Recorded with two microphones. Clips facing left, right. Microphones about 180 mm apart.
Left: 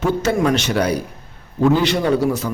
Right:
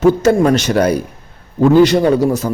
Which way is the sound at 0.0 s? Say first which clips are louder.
Right 7 dB; 40° right (ahead or behind).